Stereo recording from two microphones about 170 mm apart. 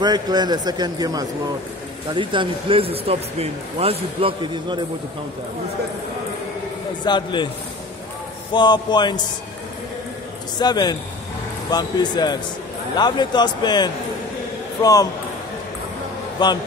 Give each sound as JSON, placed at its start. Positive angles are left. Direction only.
{"t": 0.0, "sound": "speech", "side_deg": -25}
{"t": 7.1, "sound": "a man's voice", "side_deg": 25}
{"t": 8.5, "sound": "a man's voice", "side_deg": 25}
{"t": 10.6, "sound": "a man's voice", "side_deg": 25}
{"t": 16.4, "sound": "a man's voice", "side_deg": 25}